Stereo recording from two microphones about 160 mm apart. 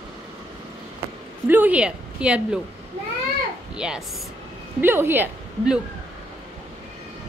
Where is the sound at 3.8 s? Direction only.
5° right (ahead or behind).